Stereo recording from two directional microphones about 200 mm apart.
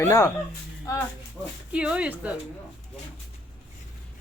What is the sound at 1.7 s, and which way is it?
Speech, 5° right (ahead or behind).